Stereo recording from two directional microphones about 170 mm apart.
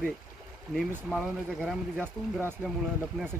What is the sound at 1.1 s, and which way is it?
Speech, centre (ahead or behind).